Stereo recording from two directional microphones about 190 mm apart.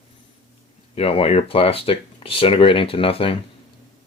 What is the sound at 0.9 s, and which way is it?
Speech, 30° left (ahead or behind).